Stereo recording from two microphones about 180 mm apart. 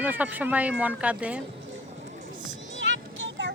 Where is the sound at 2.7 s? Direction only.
90° right.